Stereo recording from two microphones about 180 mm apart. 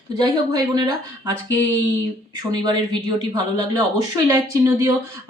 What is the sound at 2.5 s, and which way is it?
Speech, 25° right (ahead or behind).